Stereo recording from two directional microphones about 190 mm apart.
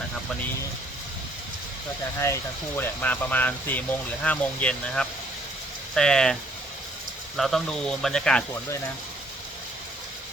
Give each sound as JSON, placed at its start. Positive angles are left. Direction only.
{"t": 2.2, "sound": "speech", "side_deg": 15}
{"t": 7.3, "sound": "speech", "side_deg": 0}